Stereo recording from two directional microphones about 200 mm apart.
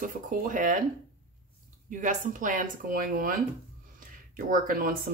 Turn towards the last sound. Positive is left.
turn(degrees=-45)  # may be behind; listen again after turning